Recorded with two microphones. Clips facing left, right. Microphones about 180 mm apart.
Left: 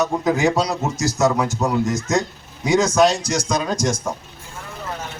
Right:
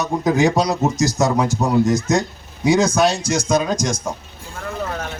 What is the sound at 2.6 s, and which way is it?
Speech, 30° right (ahead or behind).